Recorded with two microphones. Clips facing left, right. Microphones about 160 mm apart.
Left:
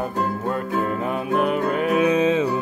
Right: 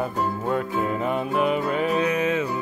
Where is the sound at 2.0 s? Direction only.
20° left (ahead or behind).